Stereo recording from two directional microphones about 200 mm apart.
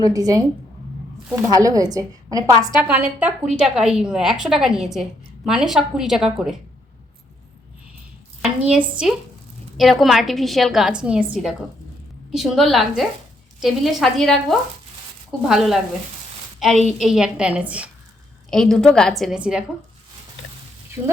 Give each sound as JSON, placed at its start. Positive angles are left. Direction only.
{"t": 0.0, "sound": "a woman's voice", "side_deg": -20}
{"t": 8.4, "sound": "a woman's voice", "side_deg": -5}
{"t": 15.4, "sound": "a woman's voice", "side_deg": 0}